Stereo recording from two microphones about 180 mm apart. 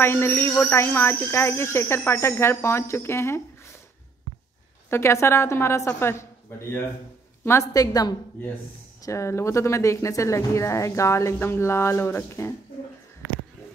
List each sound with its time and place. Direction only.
0.0 s speech: 15° left (ahead or behind)
4.8 s speech: 15° left (ahead or behind)
7.4 s a woman's voice: 15° left (ahead or behind)